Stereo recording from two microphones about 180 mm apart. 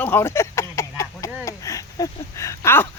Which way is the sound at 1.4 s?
20° left (ahead or behind).